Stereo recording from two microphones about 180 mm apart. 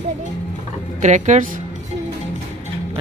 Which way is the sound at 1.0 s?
40° right (ahead or behind).